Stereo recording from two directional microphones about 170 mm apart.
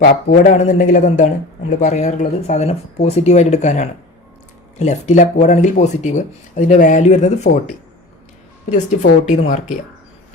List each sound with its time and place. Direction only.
0.0 s speech: 55° left (ahead or behind)
9.2 s speech: 50° left (ahead or behind)